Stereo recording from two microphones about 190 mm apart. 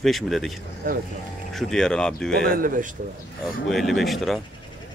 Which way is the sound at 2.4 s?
50° right (ahead or behind).